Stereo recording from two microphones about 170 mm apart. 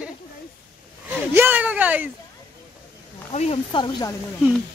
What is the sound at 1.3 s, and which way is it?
Speech, 10° right (ahead or behind).